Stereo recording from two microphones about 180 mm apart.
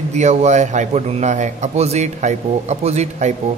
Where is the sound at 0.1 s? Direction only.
40° right (ahead or behind).